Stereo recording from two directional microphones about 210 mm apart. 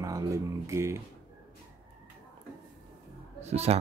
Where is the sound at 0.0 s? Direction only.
15° right (ahead or behind).